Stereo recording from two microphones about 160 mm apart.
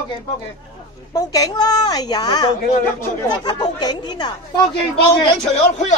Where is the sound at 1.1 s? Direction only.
20° left (ahead or behind).